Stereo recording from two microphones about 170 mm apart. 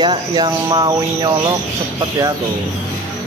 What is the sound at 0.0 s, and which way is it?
Cricket, 25° right (ahead or behind).